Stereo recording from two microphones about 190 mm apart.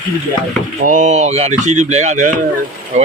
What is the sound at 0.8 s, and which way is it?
Speech, 40° right (ahead or behind).